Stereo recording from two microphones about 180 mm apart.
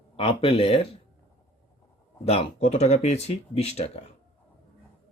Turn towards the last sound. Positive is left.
turn(degrees=35)  # may be behind; listen again after turning